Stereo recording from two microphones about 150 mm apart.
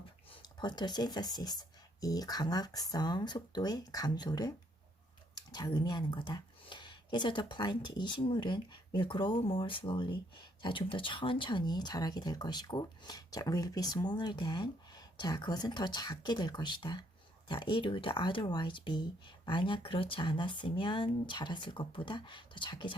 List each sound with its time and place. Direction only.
0.4 s speech: 30° left (ahead or behind)